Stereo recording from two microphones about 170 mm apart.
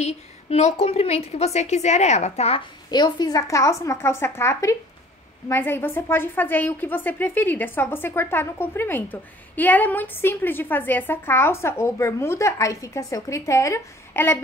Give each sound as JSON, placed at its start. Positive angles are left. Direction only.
{"t": 0.0, "sound": "a woman's voice", "side_deg": 40}
{"t": 2.9, "sound": "a woman's voice", "side_deg": 25}